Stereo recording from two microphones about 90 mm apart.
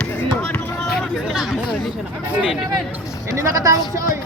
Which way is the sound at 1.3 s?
5° right (ahead or behind).